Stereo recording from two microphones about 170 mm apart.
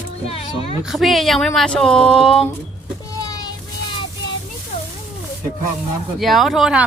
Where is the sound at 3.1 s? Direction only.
20° left (ahead or behind).